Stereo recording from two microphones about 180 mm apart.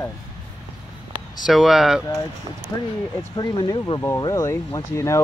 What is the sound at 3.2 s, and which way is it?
Speech, 25° left (ahead or behind).